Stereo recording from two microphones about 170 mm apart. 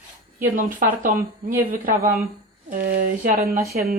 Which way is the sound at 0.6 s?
55° right (ahead or behind).